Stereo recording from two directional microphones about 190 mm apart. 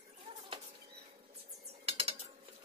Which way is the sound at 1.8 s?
30° right (ahead or behind).